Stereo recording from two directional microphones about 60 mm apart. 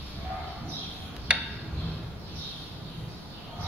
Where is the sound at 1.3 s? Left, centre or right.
Centre.